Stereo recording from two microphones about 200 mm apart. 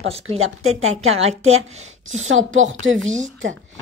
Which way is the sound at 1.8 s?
90° right.